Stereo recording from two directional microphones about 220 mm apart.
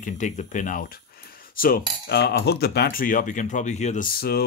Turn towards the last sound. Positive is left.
turn(degrees=45)  # may be behind; listen again after turning